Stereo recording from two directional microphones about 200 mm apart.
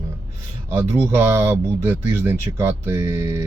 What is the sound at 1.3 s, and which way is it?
Speech, 10° right (ahead or behind).